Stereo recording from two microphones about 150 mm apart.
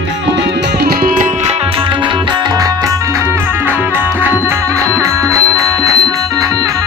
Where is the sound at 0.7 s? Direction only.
90° right; by 1.3 s 65° right (ahead or behind).